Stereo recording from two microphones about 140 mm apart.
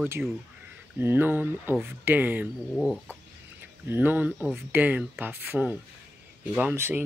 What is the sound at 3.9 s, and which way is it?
Speech, 15° right (ahead or behind).